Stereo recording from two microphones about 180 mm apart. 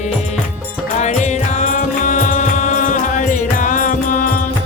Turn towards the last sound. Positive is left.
turn(degrees=45)  # may be behind; listen again after turning